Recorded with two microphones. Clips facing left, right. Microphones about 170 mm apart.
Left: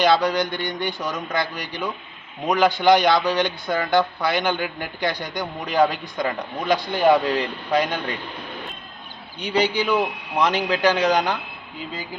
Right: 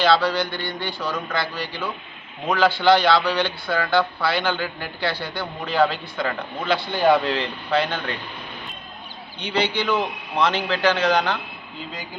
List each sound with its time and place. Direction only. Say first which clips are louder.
0.0 s a man's voice: left 1 dB; 20° left (ahead or behind)
9.7 s a man's voice: left 2 dB; 15° left (ahead or behind)